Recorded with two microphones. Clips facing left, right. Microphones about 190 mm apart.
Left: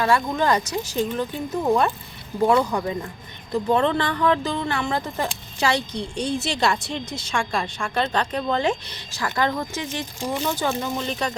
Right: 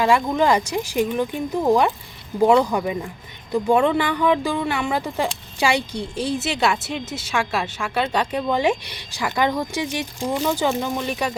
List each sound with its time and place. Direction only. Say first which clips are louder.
0.0 s a woman's voice: right 3 dB; 15° right (ahead or behind)